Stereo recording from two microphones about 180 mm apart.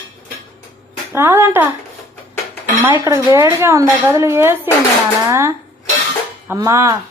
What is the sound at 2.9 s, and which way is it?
Speech, 20° right (ahead or behind).